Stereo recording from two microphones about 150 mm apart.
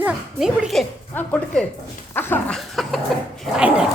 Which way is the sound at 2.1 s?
15° left (ahead or behind).